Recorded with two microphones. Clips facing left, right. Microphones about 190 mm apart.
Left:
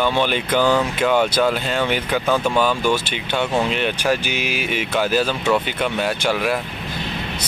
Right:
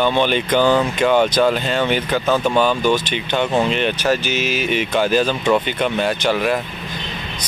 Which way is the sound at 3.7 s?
10° left (ahead or behind).